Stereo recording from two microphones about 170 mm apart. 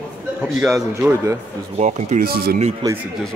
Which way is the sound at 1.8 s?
45° right (ahead or behind).